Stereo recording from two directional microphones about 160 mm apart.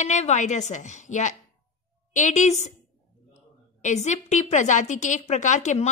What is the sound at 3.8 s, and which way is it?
A woman's voice, 45° left (ahead or behind).